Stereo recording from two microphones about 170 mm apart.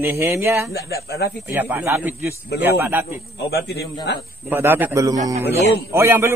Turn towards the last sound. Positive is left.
turn(degrees=-15)  # may be behind; listen again after turning